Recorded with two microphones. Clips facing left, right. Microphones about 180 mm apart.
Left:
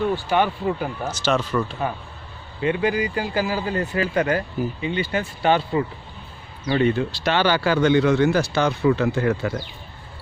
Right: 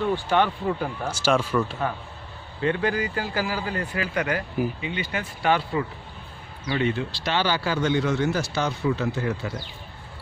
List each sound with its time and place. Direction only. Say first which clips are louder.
0.1 s speech: left 1 dB; 10° left (ahead or behind)
1.0 s speech: even; 10° right (ahead or behind)
2.6 s speech: left 3 dB; 10° left (ahead or behind); by 5.9 s 25° left (ahead or behind)
6.7 s speech: left 5 dB; 40° left (ahead or behind); by 9.6 s 60° left (ahead or behind)